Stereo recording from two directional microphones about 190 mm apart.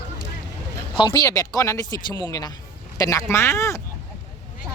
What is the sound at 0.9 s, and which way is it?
Speech, 25° left (ahead or behind).